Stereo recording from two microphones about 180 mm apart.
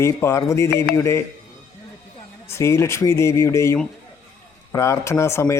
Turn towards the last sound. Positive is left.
turn(degrees=15)  # may be behind; listen again after turning